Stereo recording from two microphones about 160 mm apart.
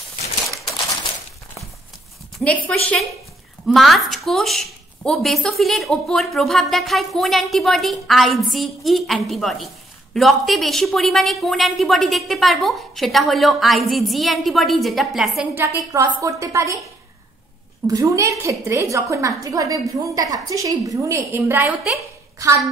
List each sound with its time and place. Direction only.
2.4 s a woman's voice: 10° left (ahead or behind)
15.5 s a woman's voice: 15° right (ahead or behind)
17.8 s a woman's voice: 20° right (ahead or behind)